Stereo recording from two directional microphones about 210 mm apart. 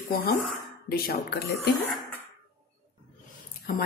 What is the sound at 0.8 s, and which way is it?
Speech, 45° left (ahead or behind).